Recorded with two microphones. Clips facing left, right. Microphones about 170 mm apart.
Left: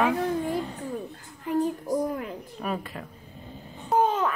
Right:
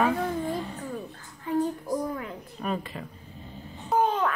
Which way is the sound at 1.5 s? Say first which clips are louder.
Left 1 dB; 15° left (ahead or behind).